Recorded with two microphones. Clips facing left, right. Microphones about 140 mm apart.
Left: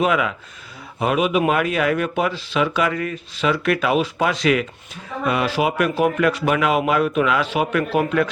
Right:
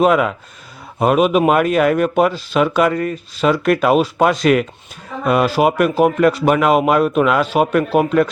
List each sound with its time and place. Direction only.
0.0 s speech: 45° right (ahead or behind)